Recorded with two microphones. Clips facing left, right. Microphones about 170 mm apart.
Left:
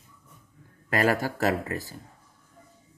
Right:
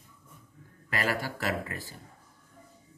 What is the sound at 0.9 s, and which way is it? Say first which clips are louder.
A man's voice: left 7 dB; 45° left (ahead or behind).